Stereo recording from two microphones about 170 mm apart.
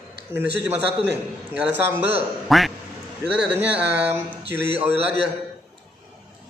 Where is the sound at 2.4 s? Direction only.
Centre (ahead or behind).